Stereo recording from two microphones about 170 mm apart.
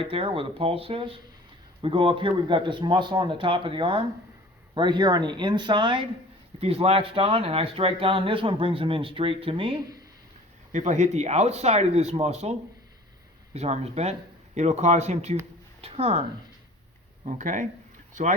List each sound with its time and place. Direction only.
0.0 s speech: 35° right (ahead or behind)
10.7 s speech: 45° right (ahead or behind)
17.2 s speech: 45° right (ahead or behind)